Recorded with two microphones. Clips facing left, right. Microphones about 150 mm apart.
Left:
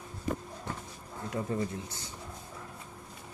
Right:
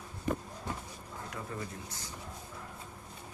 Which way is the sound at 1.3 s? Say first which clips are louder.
Left 9 dB; 25° left (ahead or behind).